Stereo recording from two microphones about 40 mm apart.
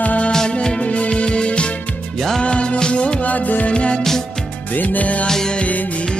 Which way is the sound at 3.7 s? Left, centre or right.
Left.